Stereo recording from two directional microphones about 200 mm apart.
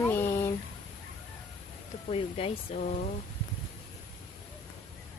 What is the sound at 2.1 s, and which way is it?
Speech, 30° left (ahead or behind).